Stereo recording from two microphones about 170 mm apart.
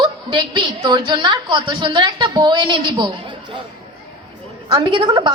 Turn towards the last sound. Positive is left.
turn(degrees=-25)  # may be behind; listen again after turning